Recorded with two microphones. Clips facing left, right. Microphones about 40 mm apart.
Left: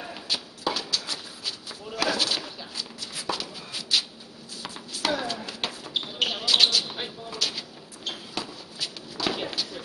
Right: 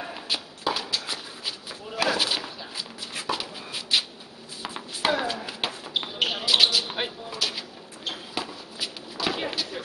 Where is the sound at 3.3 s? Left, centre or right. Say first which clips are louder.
Right 1 dB; centre.